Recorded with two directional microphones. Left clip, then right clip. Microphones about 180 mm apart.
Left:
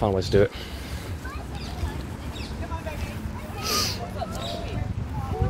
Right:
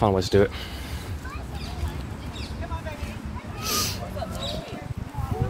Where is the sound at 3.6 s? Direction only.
40° right (ahead or behind).